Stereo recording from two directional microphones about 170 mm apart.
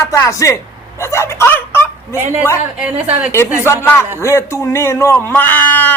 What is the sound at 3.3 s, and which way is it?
Speech, 15° left (ahead or behind).